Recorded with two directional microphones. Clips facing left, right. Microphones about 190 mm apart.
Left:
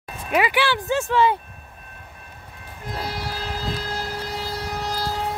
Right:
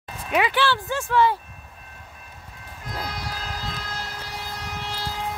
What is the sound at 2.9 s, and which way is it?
Vehicle, 30° left (ahead or behind).